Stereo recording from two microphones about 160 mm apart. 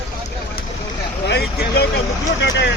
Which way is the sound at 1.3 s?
85° left.